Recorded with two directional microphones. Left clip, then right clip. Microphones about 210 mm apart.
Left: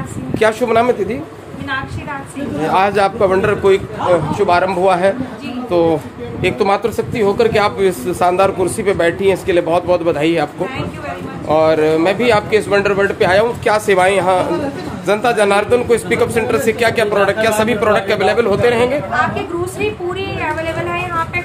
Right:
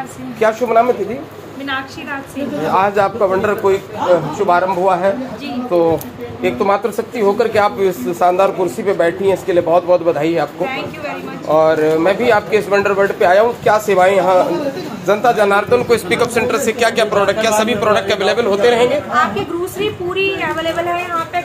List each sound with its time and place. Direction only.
0.4 s speech: 25° left (ahead or behind)
2.7 s speech: 25° left (ahead or behind)